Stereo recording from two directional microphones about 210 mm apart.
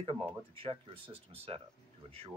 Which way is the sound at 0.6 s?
25° right (ahead or behind).